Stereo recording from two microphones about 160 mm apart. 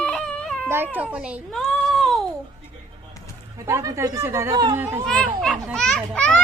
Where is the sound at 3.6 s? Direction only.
15° right (ahead or behind).